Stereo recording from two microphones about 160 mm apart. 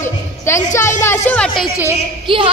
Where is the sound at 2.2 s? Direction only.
35° right (ahead or behind).